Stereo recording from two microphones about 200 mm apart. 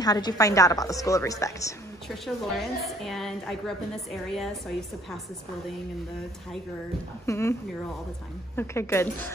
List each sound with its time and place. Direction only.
0.0 s a woman's voice: 20° left (ahead or behind)
2.0 s a woman's voice: centre (ahead or behind)
7.2 s a woman's voice: 15° left (ahead or behind)
8.5 s a woman's voice: 10° left (ahead or behind)